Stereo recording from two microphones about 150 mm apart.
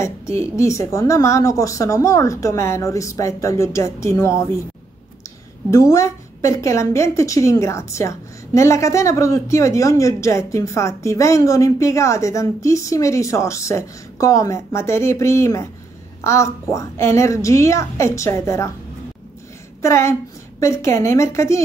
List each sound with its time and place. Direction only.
0.0 s a woman's voice: 20° left (ahead or behind)
5.7 s a woman's voice: 20° left (ahead or behind)
19.8 s a woman's voice: 20° left (ahead or behind)